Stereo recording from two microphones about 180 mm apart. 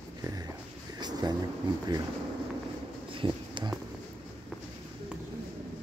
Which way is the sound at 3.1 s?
25° right (ahead or behind).